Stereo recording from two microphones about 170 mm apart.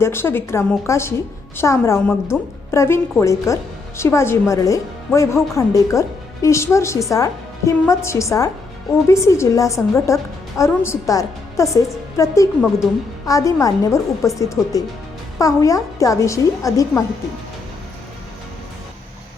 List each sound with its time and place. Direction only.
0.0 s a woman's voice: 15° left (ahead or behind)